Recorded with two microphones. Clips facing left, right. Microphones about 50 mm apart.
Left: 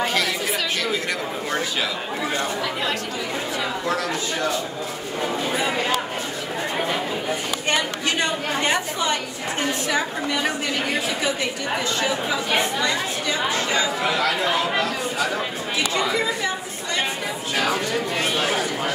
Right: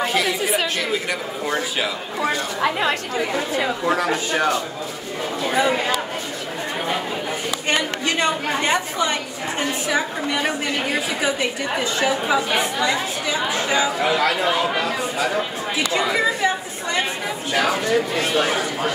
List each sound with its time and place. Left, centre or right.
0.0 s chatter: centre
2.6 s a man's voice: right
3.8 s speech: centre
4.1 s a man's voice: right
9.6 s a woman's voice: centre
11.8 s speech: centre
15.9 s speech: centre